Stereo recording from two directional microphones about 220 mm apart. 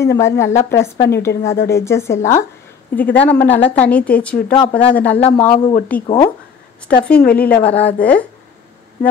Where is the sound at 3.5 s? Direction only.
25° left (ahead or behind).